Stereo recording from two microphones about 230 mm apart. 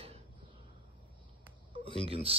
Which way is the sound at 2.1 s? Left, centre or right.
Right.